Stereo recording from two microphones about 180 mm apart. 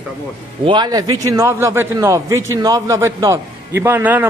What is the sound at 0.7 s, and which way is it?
A man's voice, 25° right (ahead or behind).